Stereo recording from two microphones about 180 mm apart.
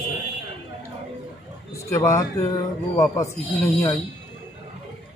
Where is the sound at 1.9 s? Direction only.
15° left (ahead or behind).